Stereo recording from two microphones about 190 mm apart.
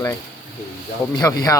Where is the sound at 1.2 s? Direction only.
15° left (ahead or behind).